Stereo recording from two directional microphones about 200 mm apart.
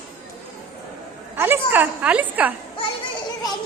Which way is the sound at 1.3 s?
10° right (ahead or behind).